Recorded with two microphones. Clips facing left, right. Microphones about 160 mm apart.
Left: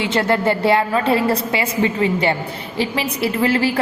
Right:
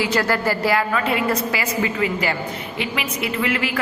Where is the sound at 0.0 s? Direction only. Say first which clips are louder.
Left 3 dB; 25° left (ahead or behind).